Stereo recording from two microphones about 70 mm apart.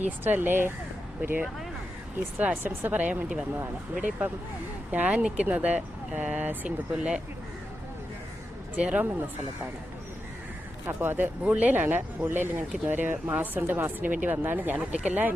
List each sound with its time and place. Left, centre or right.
0.3 s speech: right
4.9 s speech: right
6.9 s speech: centre
8.7 s speech: centre
10.8 s speech: right
11.4 s speech: right